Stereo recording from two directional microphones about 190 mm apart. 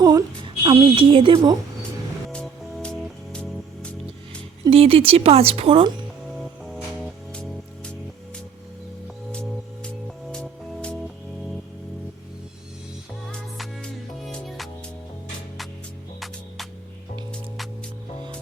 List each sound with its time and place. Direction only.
0.0 s speech: 20° right (ahead or behind)
2.3 s music: 5° left (ahead or behind)
4.6 s a woman's voice: 30° right (ahead or behind)
6.7 s music: centre (ahead or behind)
9.3 s music: 5° left (ahead or behind)
13.3 s music: centre (ahead or behind)